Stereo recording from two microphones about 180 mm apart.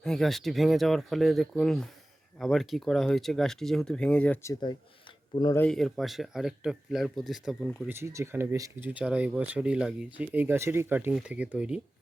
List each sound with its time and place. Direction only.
0.0 s speech: centre (ahead or behind)
5.3 s speech: 25° left (ahead or behind)
5.5 s speech: 5° left (ahead or behind)
7.9 s speech: 15° right (ahead or behind)